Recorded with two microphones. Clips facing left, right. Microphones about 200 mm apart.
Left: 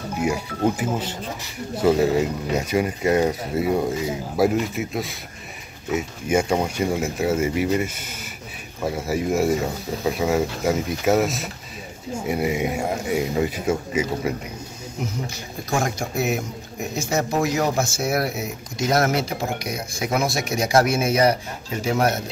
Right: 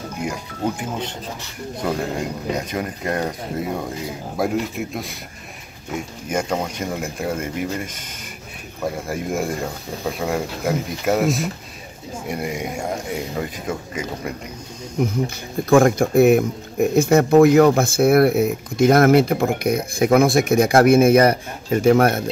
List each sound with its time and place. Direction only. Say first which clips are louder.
0.2 s speech: left 4 dB; 5° left (ahead or behind)
15.2 s speech: right 9 dB; 55° right (ahead or behind)